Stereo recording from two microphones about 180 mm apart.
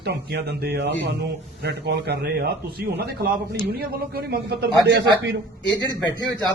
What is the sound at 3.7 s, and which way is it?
A man's voice, 60° right (ahead or behind).